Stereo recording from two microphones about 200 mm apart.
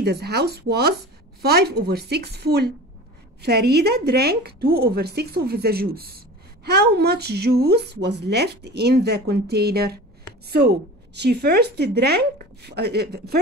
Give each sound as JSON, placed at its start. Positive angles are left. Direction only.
{"t": 0.0, "sound": "a woman's voice", "side_deg": -55}